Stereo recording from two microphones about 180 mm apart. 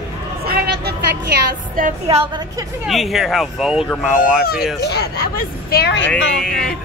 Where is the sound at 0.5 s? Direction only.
60° right (ahead or behind).